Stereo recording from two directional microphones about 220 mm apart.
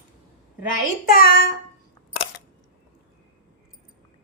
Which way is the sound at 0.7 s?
40° left (ahead or behind).